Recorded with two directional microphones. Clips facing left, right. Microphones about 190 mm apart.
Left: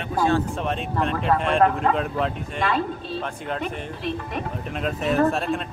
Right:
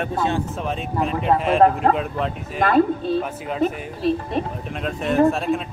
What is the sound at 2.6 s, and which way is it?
Speech, 50° right (ahead or behind).